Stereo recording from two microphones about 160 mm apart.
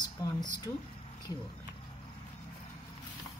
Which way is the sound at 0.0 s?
25° left (ahead or behind).